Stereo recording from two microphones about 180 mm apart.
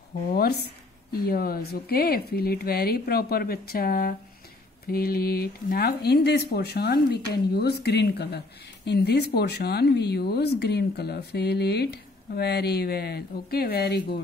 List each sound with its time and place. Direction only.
0.3 s speech: 60° left (ahead or behind)